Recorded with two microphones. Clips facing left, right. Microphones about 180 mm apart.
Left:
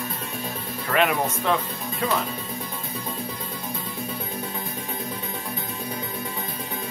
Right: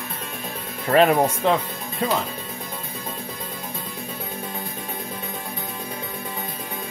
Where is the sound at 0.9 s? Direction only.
40° right (ahead or behind).